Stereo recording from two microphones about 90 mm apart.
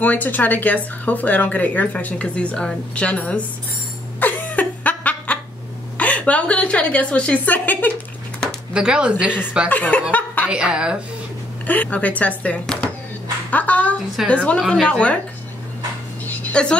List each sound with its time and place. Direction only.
0.0 s speech: 20° left (ahead or behind)
4.2 s laughter: 20° left (ahead or behind)
5.9 s speech: 15° left (ahead or behind)
8.7 s a woman's voice: 10° right (ahead or behind)
9.7 s speech: 15° left (ahead or behind)
10.1 s chuckle: 15° left (ahead or behind)
10.5 s a woman's voice: 10° right (ahead or behind)
11.6 s speech: 15° left (ahead or behind)
13.5 s a sound: 15° left (ahead or behind)
14.2 s speech: 15° left (ahead or behind)
16.3 s a sound: 15° left (ahead or behind)